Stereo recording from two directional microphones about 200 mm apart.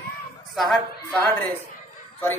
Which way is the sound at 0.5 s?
Centre (ahead or behind).